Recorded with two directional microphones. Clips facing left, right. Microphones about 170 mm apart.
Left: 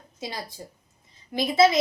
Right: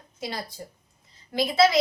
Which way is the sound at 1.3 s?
20° left (ahead or behind).